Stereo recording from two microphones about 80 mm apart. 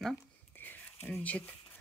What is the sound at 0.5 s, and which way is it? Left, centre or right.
Whispering, left.